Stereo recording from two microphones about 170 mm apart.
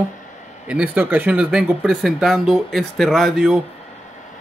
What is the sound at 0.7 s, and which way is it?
Speech, 10° right (ahead or behind).